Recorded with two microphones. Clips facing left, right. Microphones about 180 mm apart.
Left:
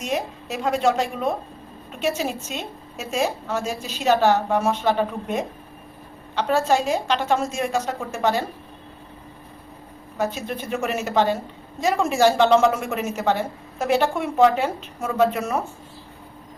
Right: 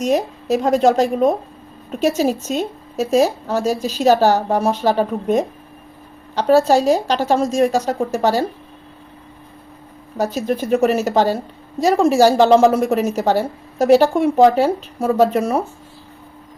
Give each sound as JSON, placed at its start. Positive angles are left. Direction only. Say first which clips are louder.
{"t": 0.0, "sound": "a woman's voice", "louder": "right 8 dB", "side_deg": -40}
{"t": 10.2, "sound": "a woman's voice", "louder": "right 6 dB", "side_deg": -40}